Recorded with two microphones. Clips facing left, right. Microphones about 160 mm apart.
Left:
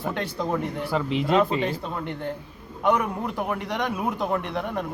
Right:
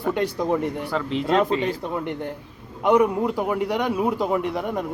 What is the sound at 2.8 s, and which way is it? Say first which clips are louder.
A man's voice: right 5 dB; 15° right (ahead or behind).